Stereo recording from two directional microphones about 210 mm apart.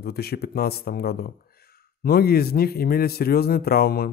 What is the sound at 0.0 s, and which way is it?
Speech, 50° left (ahead or behind).